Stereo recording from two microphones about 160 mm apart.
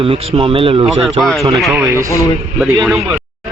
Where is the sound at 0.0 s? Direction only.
30° right (ahead or behind).